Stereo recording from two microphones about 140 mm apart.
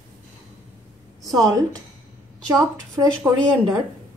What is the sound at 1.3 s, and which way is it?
Speech, 25° right (ahead or behind).